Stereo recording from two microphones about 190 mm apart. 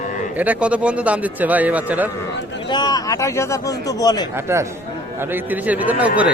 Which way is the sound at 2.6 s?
20° left (ahead or behind).